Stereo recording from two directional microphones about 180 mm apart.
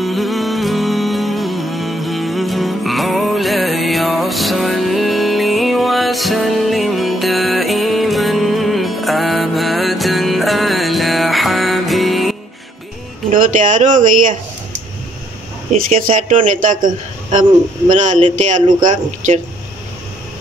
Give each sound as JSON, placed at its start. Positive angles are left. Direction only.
{"t": 0.0, "sound": "music", "side_deg": 0}
{"t": 13.3, "sound": "a man's voice", "side_deg": -45}
{"t": 15.9, "sound": "a man's voice", "side_deg": -45}